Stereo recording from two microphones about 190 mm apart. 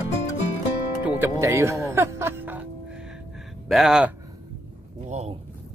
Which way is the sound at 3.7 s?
Centre (ahead or behind).